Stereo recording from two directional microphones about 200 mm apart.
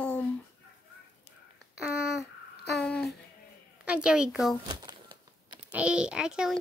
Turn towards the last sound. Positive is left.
turn(degrees=-5)  # may be behind; listen again after turning